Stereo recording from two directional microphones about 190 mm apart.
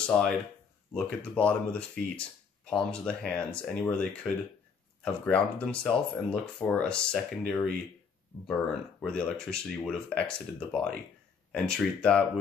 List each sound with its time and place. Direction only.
0.1 s speech: 5° left (ahead or behind)